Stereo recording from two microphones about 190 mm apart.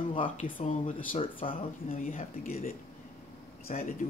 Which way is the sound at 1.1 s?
30° left (ahead or behind).